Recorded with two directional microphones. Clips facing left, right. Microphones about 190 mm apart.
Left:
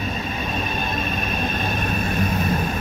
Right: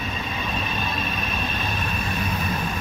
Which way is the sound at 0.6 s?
45° left (ahead or behind).